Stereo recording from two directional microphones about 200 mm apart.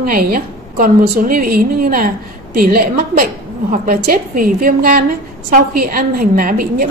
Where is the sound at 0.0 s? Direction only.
45° right (ahead or behind).